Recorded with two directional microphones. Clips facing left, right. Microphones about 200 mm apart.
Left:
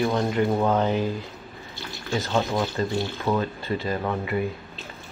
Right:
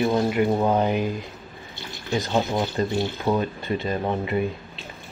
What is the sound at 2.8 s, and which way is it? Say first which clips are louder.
Speech: right 2 dB; 20° right (ahead or behind).